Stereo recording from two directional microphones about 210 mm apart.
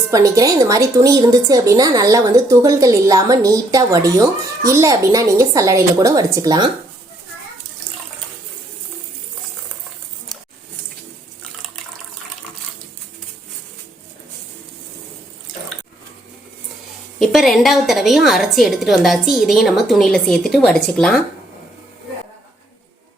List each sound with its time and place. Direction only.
0.1 s speech: 15° right (ahead or behind)
17.2 s a woman's voice: centre (ahead or behind)